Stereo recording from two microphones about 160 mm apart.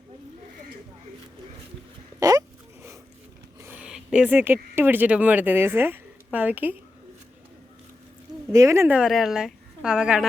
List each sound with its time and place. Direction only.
2.2 s hiccup: 20° right (ahead or behind)
3.6 s speech: 10° right (ahead or behind)
8.5 s speech: 20° right (ahead or behind)
9.0 s a woman's voice: centre (ahead or behind)